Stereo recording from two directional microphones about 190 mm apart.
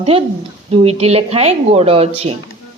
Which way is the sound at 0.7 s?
30° right (ahead or behind).